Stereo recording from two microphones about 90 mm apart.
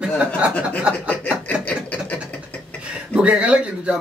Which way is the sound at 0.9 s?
15° left (ahead or behind).